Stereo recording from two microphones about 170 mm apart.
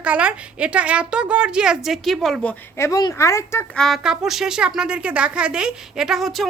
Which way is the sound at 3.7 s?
Centre (ahead or behind).